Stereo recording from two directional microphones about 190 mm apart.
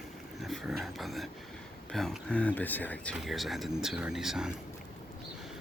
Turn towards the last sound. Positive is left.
turn(degrees=0)  # may be behind; listen again after turning